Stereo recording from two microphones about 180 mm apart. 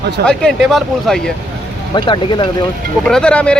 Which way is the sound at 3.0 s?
5° left (ahead or behind).